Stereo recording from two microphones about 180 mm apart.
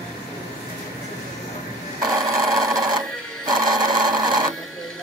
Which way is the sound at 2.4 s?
Centre (ahead or behind).